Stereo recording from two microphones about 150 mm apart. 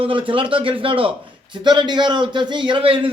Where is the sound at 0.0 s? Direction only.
35° right (ahead or behind).